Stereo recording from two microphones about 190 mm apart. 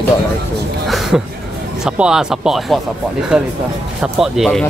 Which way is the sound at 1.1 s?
5° right (ahead or behind).